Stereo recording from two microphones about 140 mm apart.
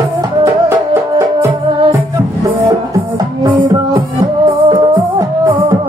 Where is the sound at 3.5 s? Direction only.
25° right (ahead or behind).